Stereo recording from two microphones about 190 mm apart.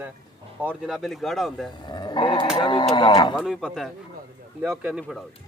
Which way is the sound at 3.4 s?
5° right (ahead or behind).